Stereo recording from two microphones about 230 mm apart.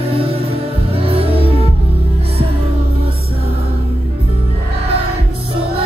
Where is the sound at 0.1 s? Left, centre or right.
Right.